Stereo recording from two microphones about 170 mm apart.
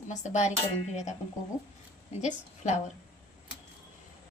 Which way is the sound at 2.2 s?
40° left (ahead or behind).